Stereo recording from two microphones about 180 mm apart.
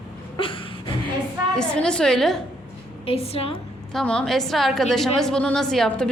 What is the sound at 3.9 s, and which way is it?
A woman's voice, 5° left (ahead or behind).